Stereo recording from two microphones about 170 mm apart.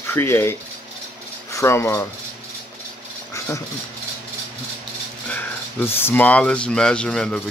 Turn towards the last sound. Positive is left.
turn(degrees=5)  # may be behind; listen again after turning